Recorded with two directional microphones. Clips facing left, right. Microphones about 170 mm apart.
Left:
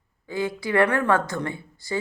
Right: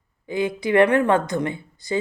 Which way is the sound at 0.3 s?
20° right (ahead or behind).